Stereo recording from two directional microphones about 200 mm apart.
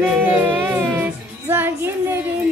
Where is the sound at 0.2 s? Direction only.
10° right (ahead or behind).